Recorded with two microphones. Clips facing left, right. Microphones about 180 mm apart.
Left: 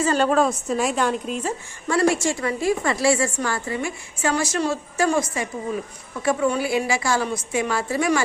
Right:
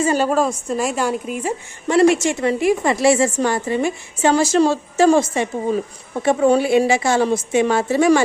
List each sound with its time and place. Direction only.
0.0 s a woman's voice: 10° right (ahead or behind); by 8.2 s 25° right (ahead or behind)